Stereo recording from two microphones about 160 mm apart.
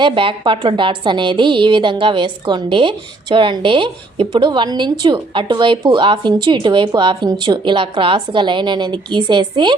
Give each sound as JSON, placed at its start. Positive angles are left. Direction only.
{"t": 0.0, "sound": "a woman's voice", "side_deg": -30}